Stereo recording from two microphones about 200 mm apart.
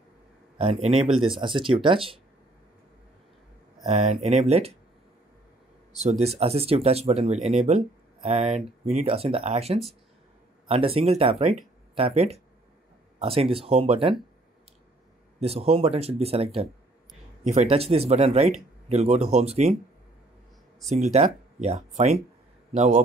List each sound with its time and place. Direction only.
1.4 s speech: 25° right (ahead or behind)
3.8 s speech: 35° right (ahead or behind)
5.9 s speech: 30° right (ahead or behind)
15.4 s speech: 30° right (ahead or behind)
20.9 s speech: 35° right (ahead or behind)